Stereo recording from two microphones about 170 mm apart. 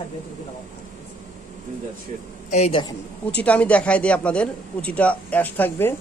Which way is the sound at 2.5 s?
40° left (ahead or behind).